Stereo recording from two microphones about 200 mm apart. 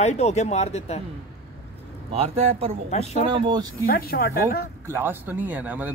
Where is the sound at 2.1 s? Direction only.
30° right (ahead or behind).